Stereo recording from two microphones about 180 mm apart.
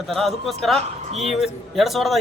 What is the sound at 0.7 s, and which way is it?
Speech, 35° right (ahead or behind).